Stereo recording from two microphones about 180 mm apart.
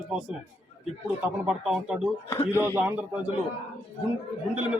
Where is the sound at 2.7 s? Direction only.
10° right (ahead or behind).